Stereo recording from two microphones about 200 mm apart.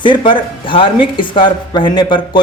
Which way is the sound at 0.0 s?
25° left (ahead or behind).